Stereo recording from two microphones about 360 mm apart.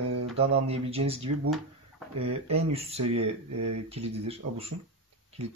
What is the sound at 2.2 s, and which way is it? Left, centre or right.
Speech, centre.